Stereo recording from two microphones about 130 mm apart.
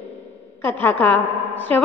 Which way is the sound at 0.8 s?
10° left (ahead or behind).